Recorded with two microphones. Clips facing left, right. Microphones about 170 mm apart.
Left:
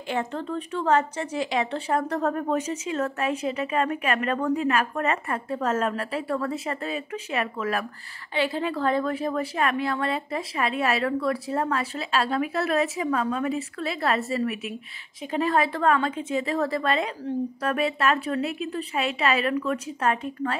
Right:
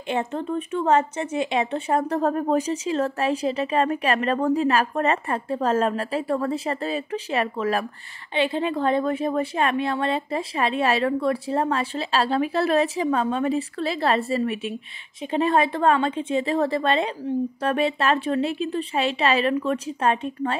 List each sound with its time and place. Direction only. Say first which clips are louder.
0.1 s a woman's voice: right 3 dB; 20° right (ahead or behind)